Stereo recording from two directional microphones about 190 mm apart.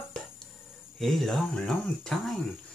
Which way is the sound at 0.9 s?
Centre (ahead or behind).